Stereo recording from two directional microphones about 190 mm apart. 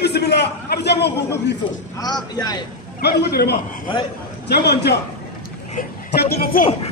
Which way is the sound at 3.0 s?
60° left (ahead or behind).